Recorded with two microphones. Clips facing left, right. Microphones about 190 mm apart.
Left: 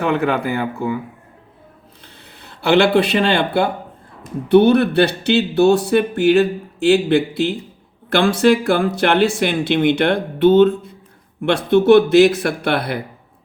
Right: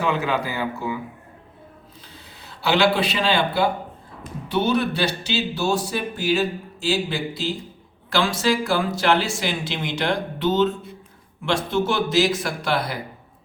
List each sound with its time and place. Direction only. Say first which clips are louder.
0.0 s speech: left 5 dB; 55° left (ahead or behind)
2.4 s speech: left 5 dB; 60° left (ahead or behind)